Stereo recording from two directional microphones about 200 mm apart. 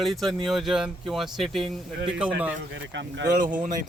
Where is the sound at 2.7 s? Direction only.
65° right (ahead or behind).